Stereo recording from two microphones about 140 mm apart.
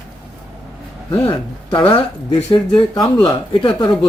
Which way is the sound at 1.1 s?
35° left (ahead or behind).